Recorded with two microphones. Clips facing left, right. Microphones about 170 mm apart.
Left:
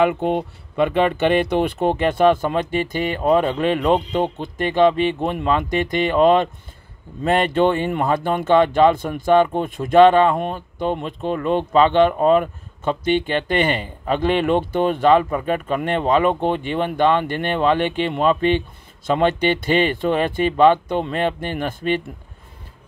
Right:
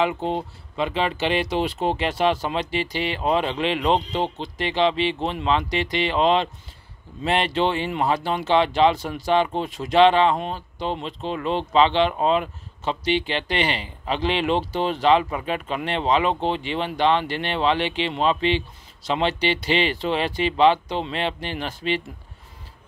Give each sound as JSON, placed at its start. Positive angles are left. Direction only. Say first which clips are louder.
{"t": 0.0, "sound": "speech", "louder": "left 5 dB", "side_deg": 60}